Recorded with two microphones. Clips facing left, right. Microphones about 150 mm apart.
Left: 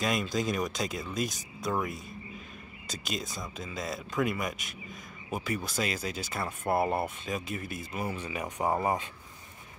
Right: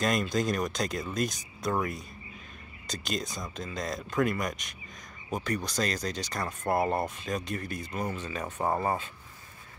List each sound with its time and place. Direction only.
0.0 s speech: centre (ahead or behind)